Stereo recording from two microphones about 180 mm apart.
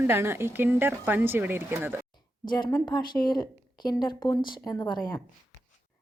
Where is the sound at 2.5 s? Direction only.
25° left (ahead or behind).